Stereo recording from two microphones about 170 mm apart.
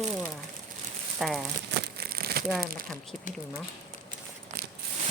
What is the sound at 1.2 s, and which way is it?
Speech, centre (ahead or behind).